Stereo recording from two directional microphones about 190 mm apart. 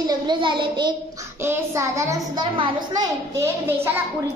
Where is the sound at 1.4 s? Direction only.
15° right (ahead or behind).